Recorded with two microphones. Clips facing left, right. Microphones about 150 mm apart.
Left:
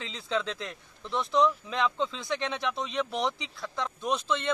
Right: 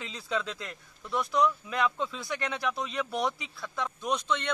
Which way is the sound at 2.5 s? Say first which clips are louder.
Left 1 dB; 5° right (ahead or behind).